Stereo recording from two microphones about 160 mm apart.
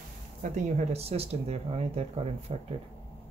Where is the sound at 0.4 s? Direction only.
40° right (ahead or behind).